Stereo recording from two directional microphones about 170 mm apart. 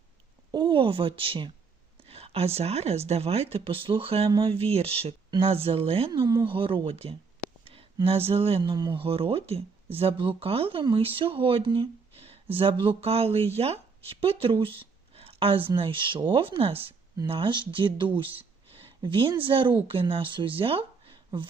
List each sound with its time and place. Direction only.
0.5 s speech: 30° right (ahead or behind)
14.8 s a sound: 35° right (ahead or behind)
15.7 s speech: 30° right (ahead or behind)